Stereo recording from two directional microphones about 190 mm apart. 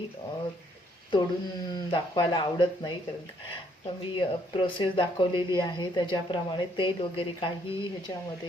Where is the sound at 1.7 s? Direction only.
25° left (ahead or behind).